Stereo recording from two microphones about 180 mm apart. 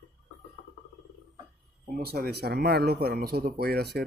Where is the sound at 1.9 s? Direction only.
55° right (ahead or behind).